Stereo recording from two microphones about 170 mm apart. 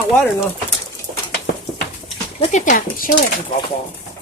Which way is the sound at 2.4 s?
45° left (ahead or behind).